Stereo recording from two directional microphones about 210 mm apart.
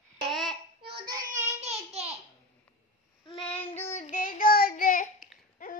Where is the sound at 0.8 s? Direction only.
50° right (ahead or behind); by 2.0 s 30° right (ahead or behind).